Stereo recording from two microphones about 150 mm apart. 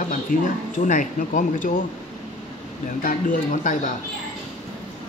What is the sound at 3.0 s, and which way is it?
Speech, 65° left (ahead or behind).